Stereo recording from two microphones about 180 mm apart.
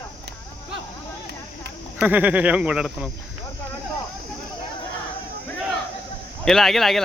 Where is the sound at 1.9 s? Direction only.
10° right (ahead or behind).